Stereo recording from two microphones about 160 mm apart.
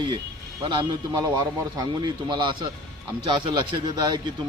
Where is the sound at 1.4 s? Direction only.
25° right (ahead or behind).